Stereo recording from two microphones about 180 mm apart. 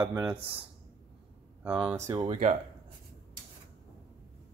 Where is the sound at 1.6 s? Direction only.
10° right (ahead or behind).